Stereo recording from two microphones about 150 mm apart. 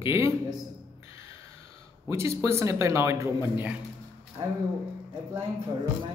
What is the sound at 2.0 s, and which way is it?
A man's voice, 20° right (ahead or behind).